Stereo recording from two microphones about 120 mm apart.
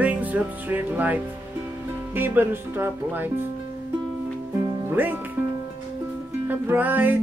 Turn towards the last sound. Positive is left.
turn(degrees=-15)  # may be behind; listen again after turning